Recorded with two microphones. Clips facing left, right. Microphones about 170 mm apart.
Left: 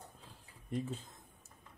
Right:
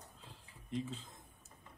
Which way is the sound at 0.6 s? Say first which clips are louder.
Left 2 dB; 50° left (ahead or behind).